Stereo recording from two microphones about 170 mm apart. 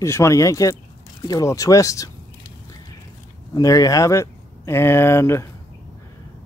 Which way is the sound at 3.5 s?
20° left (ahead or behind).